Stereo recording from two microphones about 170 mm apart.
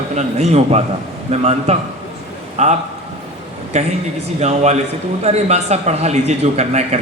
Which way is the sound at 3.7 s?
40° right (ahead or behind).